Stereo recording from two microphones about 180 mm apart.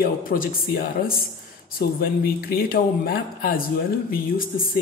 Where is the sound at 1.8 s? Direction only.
55° left (ahead or behind).